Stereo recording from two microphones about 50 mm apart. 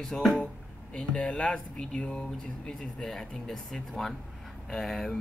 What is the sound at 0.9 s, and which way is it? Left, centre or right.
Speech, centre.